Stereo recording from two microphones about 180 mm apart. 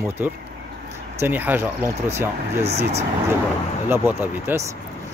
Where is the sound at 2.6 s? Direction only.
35° right (ahead or behind).